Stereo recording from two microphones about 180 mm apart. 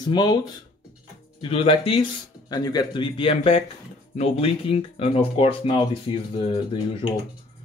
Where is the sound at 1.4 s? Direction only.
30° left (ahead or behind).